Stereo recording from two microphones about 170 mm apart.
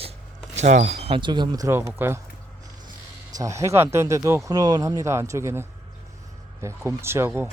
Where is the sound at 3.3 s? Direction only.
20° right (ahead or behind).